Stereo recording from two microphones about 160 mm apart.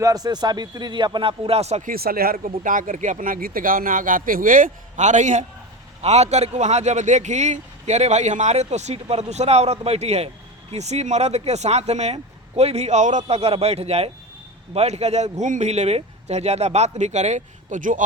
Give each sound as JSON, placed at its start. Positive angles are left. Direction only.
{"t": 0.0, "sound": "speech", "side_deg": -25}
{"t": 1.9, "sound": "a man's voice", "side_deg": -70}